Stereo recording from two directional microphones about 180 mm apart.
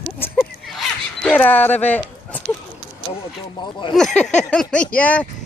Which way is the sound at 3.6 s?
25° left (ahead or behind).